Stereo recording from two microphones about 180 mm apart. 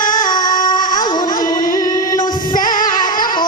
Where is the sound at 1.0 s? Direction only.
25° left (ahead or behind).